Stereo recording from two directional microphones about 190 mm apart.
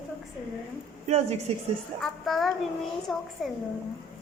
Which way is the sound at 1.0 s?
35° right (ahead or behind).